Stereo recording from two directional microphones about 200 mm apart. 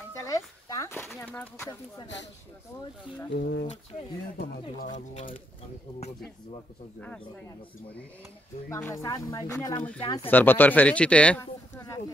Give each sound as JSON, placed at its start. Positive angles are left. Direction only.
{"t": 0.1, "sound": "speech", "side_deg": 15}
{"t": 3.3, "sound": "speech", "side_deg": 50}
{"t": 4.9, "sound": "speech", "side_deg": 35}
{"t": 7.0, "sound": "a man's voice", "side_deg": 5}
{"t": 10.3, "sound": "a man's voice", "side_deg": 10}